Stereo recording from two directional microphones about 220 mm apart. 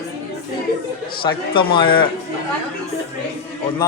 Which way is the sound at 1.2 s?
20° left (ahead or behind).